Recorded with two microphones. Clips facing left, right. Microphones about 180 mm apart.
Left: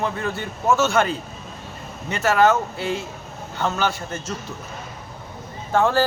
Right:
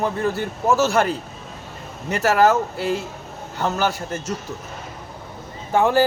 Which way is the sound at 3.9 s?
40° right (ahead or behind).